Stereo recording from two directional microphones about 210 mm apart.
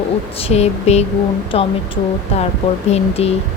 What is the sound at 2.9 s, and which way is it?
Speech, 30° left (ahead or behind).